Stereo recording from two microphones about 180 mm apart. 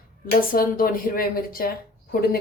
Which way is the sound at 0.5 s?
50° left (ahead or behind).